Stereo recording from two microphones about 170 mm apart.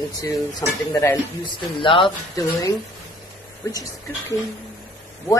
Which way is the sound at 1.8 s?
30° left (ahead or behind).